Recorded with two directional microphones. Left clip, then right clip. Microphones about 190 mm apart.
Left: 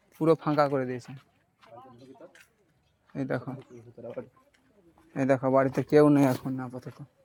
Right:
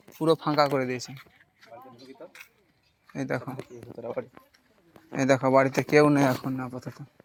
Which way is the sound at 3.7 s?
50° right (ahead or behind).